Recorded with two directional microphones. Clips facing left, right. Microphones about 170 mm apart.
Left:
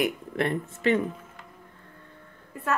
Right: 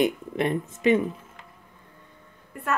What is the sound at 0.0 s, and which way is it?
Speech, 15° right (ahead or behind).